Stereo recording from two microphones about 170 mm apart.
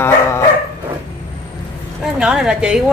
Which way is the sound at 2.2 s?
5° right (ahead or behind).